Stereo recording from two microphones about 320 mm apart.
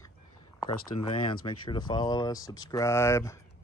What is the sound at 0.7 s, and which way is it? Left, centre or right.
Speech, left.